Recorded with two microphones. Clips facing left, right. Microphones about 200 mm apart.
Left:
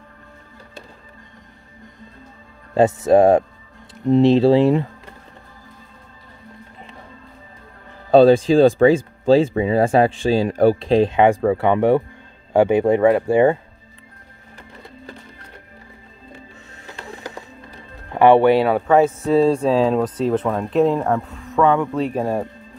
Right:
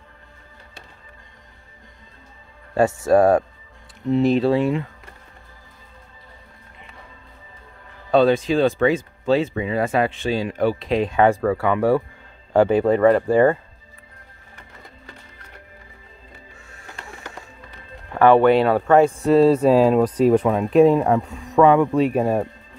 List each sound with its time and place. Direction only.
2.7 s speech: 20° left (ahead or behind)
8.1 s speech: 30° left (ahead or behind)
11.1 s speech: 20° left (ahead or behind)
12.5 s speech: 15° left (ahead or behind)
18.1 s speech: 15° left (ahead or behind); by 22.5 s 5° right (ahead or behind)